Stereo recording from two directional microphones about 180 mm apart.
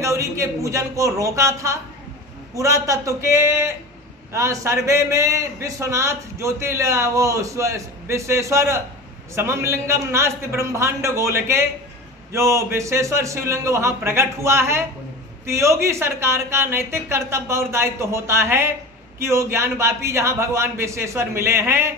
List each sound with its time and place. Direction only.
0.0 s a man's voice: 15° right (ahead or behind)